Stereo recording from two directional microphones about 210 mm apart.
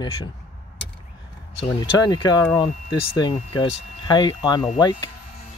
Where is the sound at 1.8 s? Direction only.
20° left (ahead or behind).